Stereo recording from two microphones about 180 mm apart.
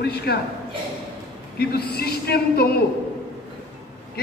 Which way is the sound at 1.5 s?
60° left (ahead or behind).